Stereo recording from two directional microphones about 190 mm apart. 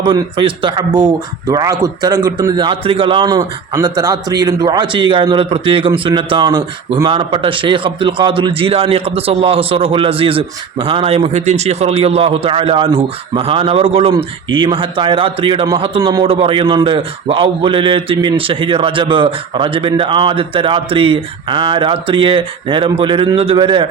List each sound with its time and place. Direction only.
0.0 s a man's voice: 25° right (ahead or behind)